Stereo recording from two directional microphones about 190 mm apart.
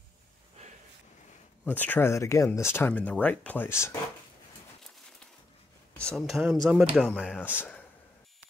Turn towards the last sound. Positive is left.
turn(degrees=0)  # may be behind; listen again after turning